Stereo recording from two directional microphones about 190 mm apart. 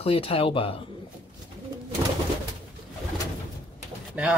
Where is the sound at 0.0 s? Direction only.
30° left (ahead or behind).